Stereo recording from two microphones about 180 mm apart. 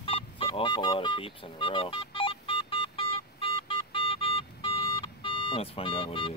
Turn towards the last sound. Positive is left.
turn(degrees=30)  # may be behind; listen again after turning